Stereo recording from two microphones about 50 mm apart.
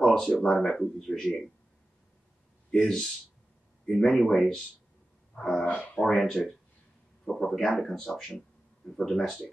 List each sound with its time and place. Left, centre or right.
0.0 s a sound: centre
0.4 s speech: centre
2.7 s speech: centre
5.6 s speech: left
5.9 s speech: centre